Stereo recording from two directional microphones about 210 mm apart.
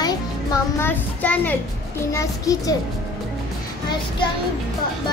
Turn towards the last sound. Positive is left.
turn(degrees=25)  # may be behind; listen again after turning